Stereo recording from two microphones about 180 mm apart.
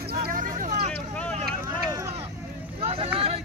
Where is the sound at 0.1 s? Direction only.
55° right (ahead or behind).